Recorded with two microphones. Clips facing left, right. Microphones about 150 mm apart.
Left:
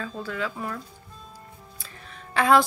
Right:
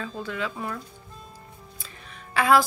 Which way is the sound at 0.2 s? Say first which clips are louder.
Even; 20° right (ahead or behind).